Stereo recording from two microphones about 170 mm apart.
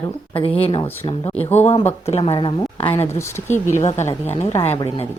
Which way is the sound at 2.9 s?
15° left (ahead or behind).